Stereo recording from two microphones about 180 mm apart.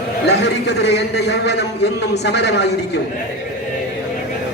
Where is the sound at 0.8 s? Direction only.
70° left (ahead or behind).